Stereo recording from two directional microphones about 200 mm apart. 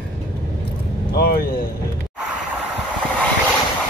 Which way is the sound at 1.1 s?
55° left (ahead or behind).